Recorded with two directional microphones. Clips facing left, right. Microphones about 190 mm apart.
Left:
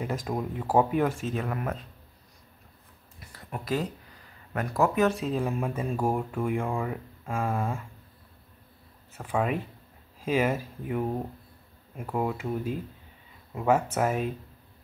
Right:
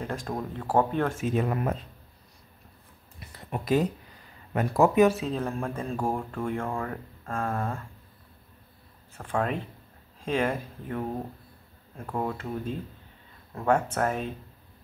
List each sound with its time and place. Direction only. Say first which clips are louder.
0.0 s speech: left 2 dB; 5° left (ahead or behind)
1.2 s speech: right 4 dB; 20° right (ahead or behind)
3.5 s speech: right 5 dB; 20° right (ahead or behind)
5.0 s speech: right 3 dB; 5° right (ahead or behind)
5.3 s speech: left 2 dB; 5° left (ahead or behind)
9.1 s speech: left 1 dB; 5° left (ahead or behind)